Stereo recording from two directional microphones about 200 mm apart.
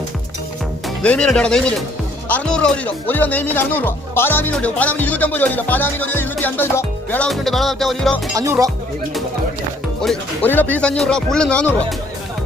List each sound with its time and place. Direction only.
1.0 s speech: 5° left (ahead or behind)
8.4 s music: 15° right (ahead or behind)
10.0 s speech: 5° left (ahead or behind)